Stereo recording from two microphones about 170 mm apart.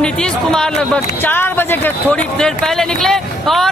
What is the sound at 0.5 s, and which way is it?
Speech, 5° left (ahead or behind).